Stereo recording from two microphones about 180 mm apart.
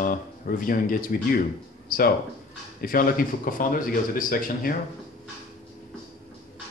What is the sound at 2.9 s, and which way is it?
Speech, 50° left (ahead or behind).